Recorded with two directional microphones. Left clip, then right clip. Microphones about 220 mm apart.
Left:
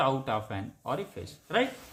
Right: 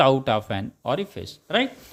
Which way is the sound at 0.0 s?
40° right (ahead or behind).